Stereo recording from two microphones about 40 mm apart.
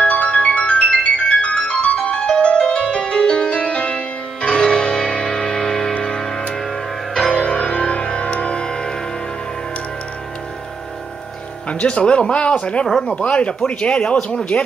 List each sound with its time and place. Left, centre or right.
0.0 s music: left; by 8.9 s centre
11.7 s speech: left